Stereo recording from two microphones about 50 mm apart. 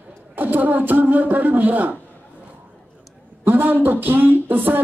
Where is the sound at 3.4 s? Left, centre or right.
Right.